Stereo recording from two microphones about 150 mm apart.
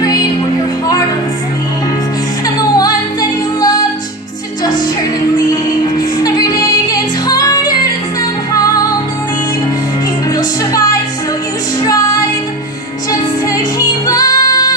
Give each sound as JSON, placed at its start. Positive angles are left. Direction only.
{"t": 0.0, "sound": "music", "side_deg": 25}
{"t": 2.4, "sound": "music", "side_deg": 25}
{"t": 5.5, "sound": "music", "side_deg": 25}
{"t": 10.3, "sound": "music", "side_deg": 25}